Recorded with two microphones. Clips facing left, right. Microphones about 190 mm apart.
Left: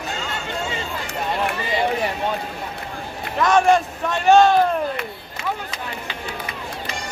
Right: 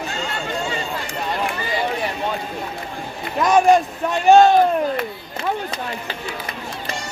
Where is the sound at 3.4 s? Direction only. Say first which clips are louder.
Right 2 dB; 15° right (ahead or behind).